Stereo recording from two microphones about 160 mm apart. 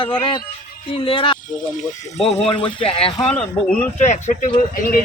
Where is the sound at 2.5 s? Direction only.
30° left (ahead or behind).